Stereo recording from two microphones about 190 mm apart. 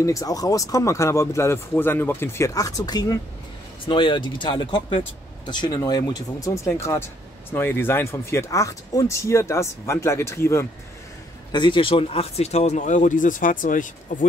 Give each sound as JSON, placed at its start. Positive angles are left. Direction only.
{"t": 0.0, "sound": "speech", "side_deg": 15}
{"t": 11.5, "sound": "speech", "side_deg": 25}